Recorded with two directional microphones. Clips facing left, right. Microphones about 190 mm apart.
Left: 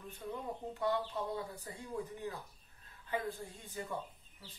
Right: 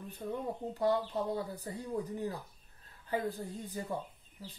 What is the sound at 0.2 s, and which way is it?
Speech, 30° right (ahead or behind).